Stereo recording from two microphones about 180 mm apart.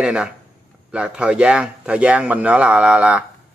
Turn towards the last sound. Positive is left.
turn(degrees=-5)  # may be behind; listen again after turning